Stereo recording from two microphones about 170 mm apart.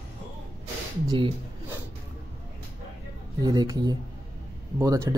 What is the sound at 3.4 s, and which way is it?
Speech, 20° right (ahead or behind).